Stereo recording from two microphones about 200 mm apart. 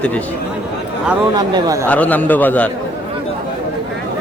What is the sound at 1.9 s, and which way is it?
Speech, 10° left (ahead or behind).